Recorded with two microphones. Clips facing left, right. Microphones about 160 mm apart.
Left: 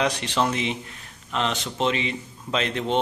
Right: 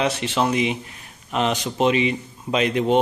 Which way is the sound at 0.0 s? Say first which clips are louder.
Right 2 dB; 5° right (ahead or behind).